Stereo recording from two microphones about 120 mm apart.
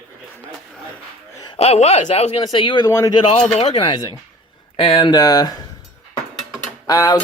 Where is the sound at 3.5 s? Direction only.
60° left (ahead or behind).